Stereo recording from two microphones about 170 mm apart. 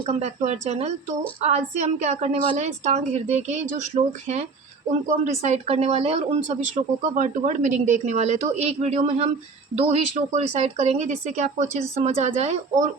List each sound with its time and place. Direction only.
0.0 s speech: 40° right (ahead or behind)